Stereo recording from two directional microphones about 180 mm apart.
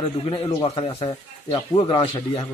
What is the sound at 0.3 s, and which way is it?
A man's voice, 25° left (ahead or behind).